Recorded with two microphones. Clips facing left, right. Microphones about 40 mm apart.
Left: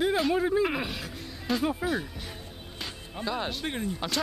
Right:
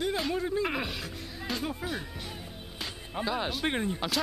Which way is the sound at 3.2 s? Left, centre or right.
Centre.